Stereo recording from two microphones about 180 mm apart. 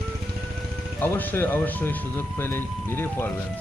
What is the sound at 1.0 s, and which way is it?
Speech, 10° left (ahead or behind).